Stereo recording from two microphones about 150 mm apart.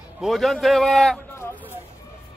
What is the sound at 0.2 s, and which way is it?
A man's voice, centre (ahead or behind).